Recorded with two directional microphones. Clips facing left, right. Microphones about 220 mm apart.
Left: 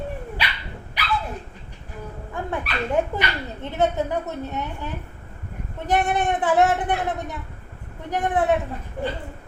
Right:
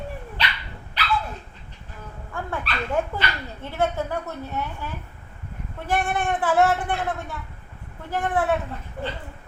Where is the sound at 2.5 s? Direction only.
20° left (ahead or behind).